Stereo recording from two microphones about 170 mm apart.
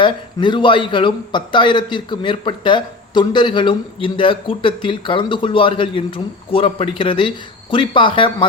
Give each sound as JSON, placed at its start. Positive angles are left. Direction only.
{"t": 0.0, "sound": "a man's voice", "side_deg": 25}